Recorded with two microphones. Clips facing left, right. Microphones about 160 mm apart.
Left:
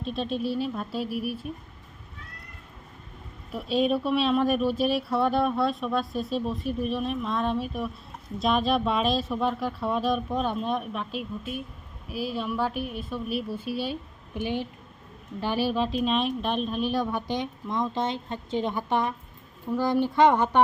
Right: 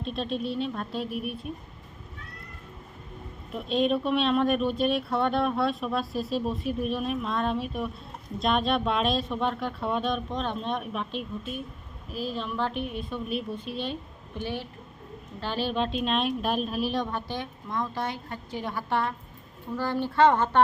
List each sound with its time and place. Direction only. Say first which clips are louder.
0.0 s speech: left 2 dB; centre (ahead or behind)
3.5 s a woman's voice: left 1 dB; 5° left (ahead or behind)
14.3 s a woman's voice: left 4 dB; 15° left (ahead or behind)